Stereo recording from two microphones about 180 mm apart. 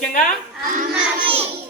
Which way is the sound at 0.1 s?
45° left (ahead or behind).